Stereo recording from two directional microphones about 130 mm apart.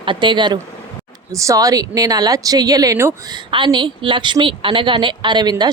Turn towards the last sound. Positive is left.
turn(degrees=-35)  # may be behind; listen again after turning